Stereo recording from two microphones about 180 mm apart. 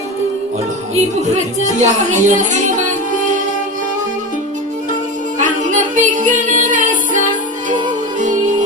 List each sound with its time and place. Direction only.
0.9 s speech: 40° right (ahead or behind)
5.4 s music: 45° right (ahead or behind)